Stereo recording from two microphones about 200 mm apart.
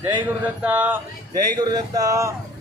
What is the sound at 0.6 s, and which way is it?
Speech, 5° right (ahead or behind).